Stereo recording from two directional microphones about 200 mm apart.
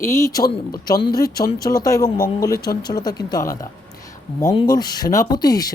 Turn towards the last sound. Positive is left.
turn(degrees=20)  # may be behind; listen again after turning